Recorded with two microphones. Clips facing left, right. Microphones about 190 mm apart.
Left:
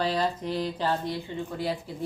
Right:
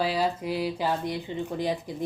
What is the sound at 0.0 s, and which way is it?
Speech, 10° right (ahead or behind).